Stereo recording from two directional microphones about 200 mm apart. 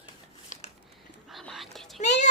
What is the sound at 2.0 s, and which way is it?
Speech, 35° left (ahead or behind).